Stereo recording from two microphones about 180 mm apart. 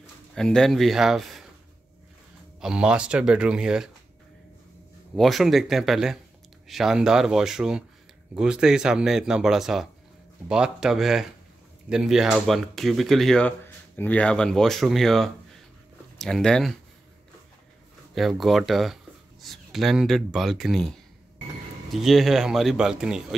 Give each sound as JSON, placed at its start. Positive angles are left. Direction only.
{"t": 0.3, "sound": "speech", "side_deg": 5}
{"t": 2.6, "sound": "speech", "side_deg": -5}
{"t": 5.1, "sound": "speech", "side_deg": 0}
{"t": 18.1, "sound": "speech", "side_deg": 0}
{"t": 21.9, "sound": "speech", "side_deg": 0}